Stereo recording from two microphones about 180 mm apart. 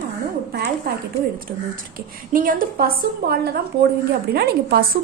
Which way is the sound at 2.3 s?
50° right (ahead or behind).